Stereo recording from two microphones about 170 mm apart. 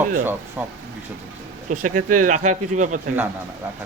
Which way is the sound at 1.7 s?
50° right (ahead or behind).